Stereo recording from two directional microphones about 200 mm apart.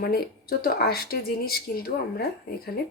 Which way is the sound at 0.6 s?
50° left (ahead or behind).